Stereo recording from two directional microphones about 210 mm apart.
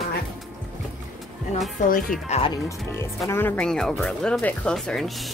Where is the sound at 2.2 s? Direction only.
30° left (ahead or behind).